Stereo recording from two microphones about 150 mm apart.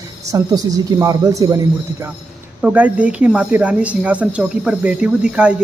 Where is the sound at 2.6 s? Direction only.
10° right (ahead or behind).